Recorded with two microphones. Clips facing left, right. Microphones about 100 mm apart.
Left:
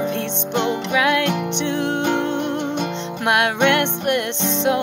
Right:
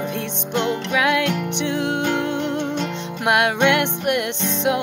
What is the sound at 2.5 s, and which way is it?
Music, 15° left (ahead or behind).